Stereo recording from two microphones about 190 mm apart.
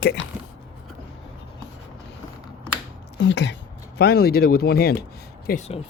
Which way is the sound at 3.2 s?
65° left (ahead or behind).